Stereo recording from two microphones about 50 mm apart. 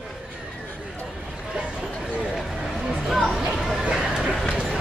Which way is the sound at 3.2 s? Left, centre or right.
Centre.